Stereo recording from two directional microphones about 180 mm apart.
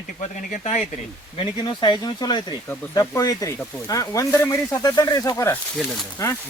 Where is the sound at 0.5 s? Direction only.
40° left (ahead or behind).